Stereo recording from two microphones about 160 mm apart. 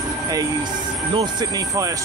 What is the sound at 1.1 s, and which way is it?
Speech, 25° right (ahead or behind).